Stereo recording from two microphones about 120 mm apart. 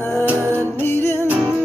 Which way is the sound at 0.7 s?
15° left (ahead or behind).